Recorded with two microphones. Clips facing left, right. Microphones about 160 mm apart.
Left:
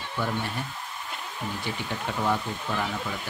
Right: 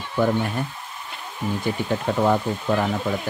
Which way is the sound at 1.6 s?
50° right (ahead or behind).